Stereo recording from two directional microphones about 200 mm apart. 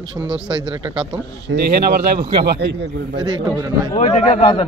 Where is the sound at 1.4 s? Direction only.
55° right (ahead or behind).